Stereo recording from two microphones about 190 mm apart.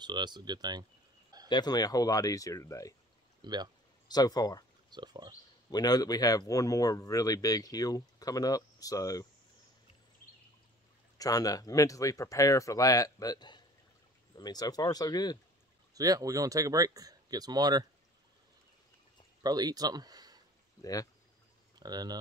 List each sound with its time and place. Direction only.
0.0 s speech: 20° right (ahead or behind)
1.5 s speech: 20° left (ahead or behind)
3.4 s speech: 20° right (ahead or behind)
4.1 s speech: 20° left (ahead or behind)
4.9 s speech: 25° right (ahead or behind)
5.7 s speech: 20° left (ahead or behind)
11.1 s speech: 20° left (ahead or behind)
15.9 s speech: 20° right (ahead or behind)
19.4 s speech: 20° right (ahead or behind)
20.8 s speech: 20° left (ahead or behind)
21.7 s speech: 20° right (ahead or behind)